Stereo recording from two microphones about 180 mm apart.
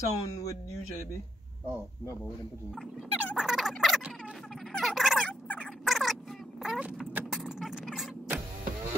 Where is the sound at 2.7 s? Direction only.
Centre (ahead or behind).